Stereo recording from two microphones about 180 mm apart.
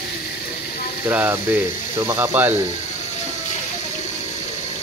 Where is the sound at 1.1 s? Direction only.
10° right (ahead or behind).